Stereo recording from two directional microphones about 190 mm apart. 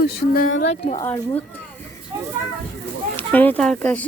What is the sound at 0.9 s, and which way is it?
Speech, 15° left (ahead or behind).